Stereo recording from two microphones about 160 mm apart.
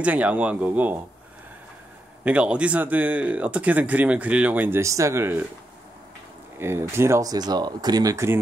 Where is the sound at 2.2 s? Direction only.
10° right (ahead or behind).